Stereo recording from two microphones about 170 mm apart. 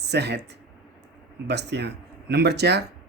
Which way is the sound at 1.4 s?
80° right.